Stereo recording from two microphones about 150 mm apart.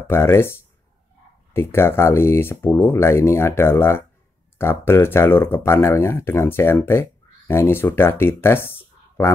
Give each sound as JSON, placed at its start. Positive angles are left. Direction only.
{"t": 0.0, "sound": "speech", "side_deg": 15}